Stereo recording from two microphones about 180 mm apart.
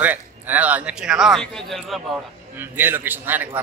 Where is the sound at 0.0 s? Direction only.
10° right (ahead or behind).